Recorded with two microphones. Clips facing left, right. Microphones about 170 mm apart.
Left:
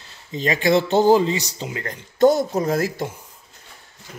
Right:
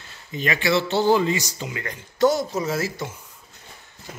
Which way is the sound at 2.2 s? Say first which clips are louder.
Left 4 dB; 55° left (ahead or behind).